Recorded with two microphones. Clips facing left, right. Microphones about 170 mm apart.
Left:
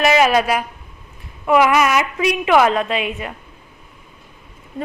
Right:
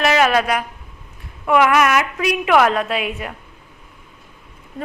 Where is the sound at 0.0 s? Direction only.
5° left (ahead or behind).